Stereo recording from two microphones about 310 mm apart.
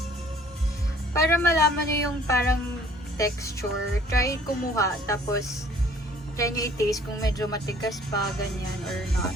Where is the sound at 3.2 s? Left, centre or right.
Centre.